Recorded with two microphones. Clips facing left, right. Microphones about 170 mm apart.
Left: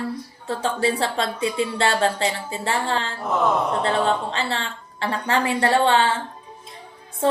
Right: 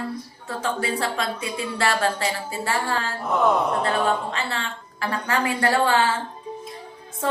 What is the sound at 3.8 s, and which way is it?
Speech, 30° left (ahead or behind).